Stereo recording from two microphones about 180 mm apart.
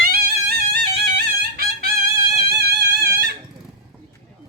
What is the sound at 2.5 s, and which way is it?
Music, 60° right (ahead or behind).